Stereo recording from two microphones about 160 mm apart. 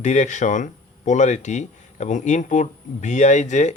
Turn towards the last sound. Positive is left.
turn(degrees=50)  # may be behind; listen again after turning